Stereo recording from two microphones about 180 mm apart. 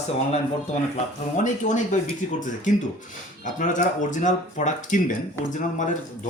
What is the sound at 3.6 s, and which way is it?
Speech, 45° left (ahead or behind).